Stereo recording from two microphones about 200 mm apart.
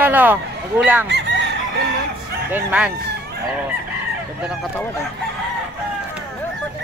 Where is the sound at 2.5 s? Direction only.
10° right (ahead or behind).